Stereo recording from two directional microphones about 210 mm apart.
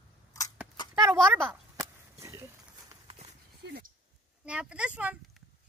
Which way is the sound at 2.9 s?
25° right (ahead or behind).